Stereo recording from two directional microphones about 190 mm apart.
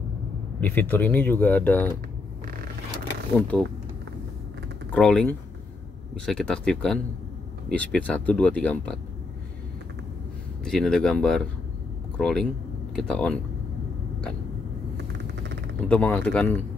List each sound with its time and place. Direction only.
0.6 s speech: 10° left (ahead or behind)
3.3 s speech: 5° left (ahead or behind)
4.9 s speech: 5° left (ahead or behind)
10.6 s speech: 5° left (ahead or behind)
15.1 s vehicle: 65° right (ahead or behind)
15.9 s speech: 5° left (ahead or behind)